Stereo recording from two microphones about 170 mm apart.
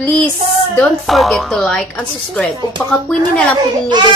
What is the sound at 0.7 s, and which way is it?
A woman's voice, 5° left (ahead or behind).